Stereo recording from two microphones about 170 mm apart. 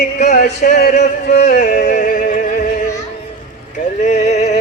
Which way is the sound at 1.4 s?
55° left (ahead or behind).